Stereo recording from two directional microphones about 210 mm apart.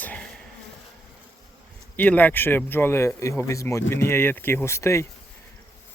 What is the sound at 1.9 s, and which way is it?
Speech, 5° left (ahead or behind).